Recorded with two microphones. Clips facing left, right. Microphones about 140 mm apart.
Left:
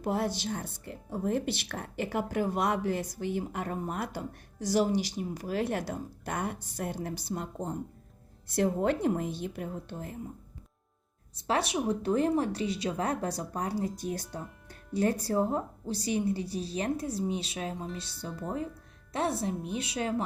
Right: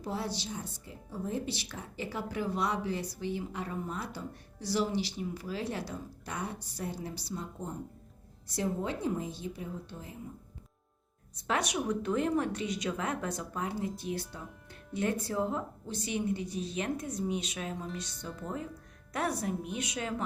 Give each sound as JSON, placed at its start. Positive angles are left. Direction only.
{"t": 0.0, "sound": "speech", "side_deg": 50}
{"t": 4.6, "sound": "a woman's voice", "side_deg": 45}
{"t": 11.3, "sound": "speech", "side_deg": 30}